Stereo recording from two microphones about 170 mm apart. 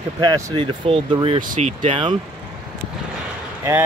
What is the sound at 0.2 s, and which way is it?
Speech, 30° right (ahead or behind).